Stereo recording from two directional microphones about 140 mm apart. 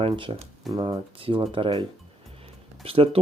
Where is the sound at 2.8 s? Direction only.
40° right (ahead or behind).